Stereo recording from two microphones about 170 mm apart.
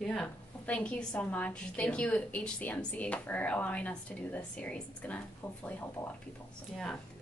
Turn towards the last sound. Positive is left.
turn(degrees=5)  # may be behind; listen again after turning